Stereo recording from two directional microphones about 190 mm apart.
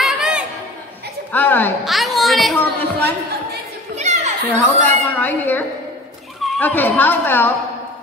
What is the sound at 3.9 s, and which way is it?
Children playing, 35° right (ahead or behind).